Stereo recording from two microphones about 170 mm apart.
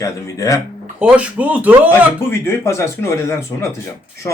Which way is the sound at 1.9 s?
15° left (ahead or behind).